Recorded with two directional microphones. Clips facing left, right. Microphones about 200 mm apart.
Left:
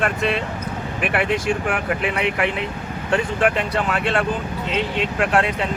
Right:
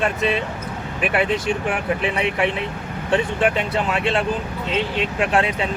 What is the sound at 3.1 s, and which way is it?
Speech, centre (ahead or behind).